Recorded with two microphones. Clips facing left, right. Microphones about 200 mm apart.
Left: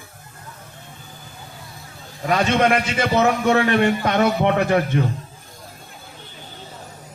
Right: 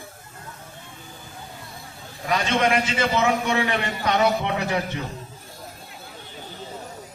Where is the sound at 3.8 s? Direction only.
50° left (ahead or behind).